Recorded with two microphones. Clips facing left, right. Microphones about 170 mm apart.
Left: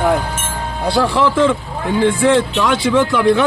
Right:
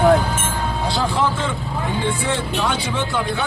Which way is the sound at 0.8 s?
65° left (ahead or behind).